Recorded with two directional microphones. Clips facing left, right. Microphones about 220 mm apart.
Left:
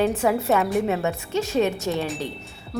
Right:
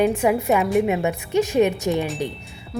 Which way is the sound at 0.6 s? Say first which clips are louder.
Right 3 dB; centre (ahead or behind).